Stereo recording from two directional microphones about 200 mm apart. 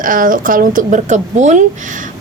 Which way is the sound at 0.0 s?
45° right (ahead or behind).